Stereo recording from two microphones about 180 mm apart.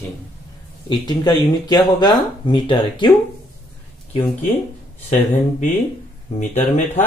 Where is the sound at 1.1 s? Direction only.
20° left (ahead or behind).